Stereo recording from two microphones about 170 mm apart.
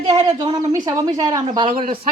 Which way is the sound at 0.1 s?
25° right (ahead or behind).